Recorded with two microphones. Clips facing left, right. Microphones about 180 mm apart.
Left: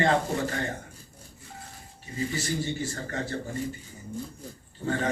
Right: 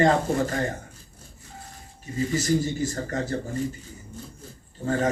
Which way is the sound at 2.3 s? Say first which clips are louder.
Right 9 dB; 40° right (ahead or behind).